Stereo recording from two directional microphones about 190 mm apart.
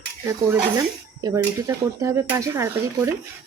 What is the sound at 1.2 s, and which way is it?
Speech, 15° right (ahead or behind).